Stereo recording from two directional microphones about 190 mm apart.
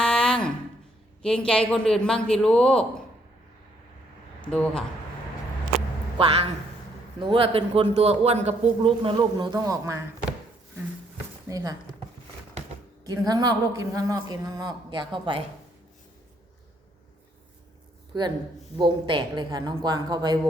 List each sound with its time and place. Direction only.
0.0 s a sound: 5° left (ahead or behind)
1.2 s a man's voice: 5° left (ahead or behind)
4.4 s speech: 5° left (ahead or behind)
6.1 s a man's voice: 30° right (ahead or behind)
11.4 s a man's voice: 20° right (ahead or behind)
13.1 s a man's voice: 20° right (ahead or behind)
18.8 s a man's voice: 25° right (ahead or behind)